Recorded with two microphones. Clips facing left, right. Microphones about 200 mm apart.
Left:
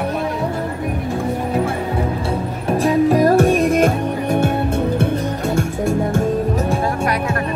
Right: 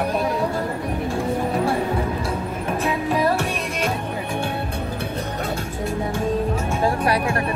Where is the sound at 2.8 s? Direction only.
45° left (ahead or behind).